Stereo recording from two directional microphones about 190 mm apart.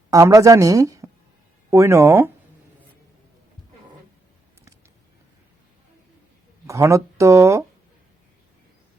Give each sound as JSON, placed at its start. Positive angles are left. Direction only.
{"t": 0.1, "sound": "a woman's voice", "side_deg": -15}
{"t": 6.7, "sound": "a woman's voice", "side_deg": -15}